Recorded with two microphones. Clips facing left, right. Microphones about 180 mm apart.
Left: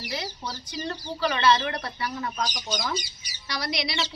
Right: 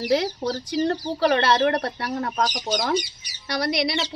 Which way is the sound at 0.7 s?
75° right (ahead or behind).